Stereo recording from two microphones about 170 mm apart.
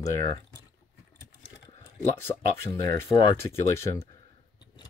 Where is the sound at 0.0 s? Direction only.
20° left (ahead or behind).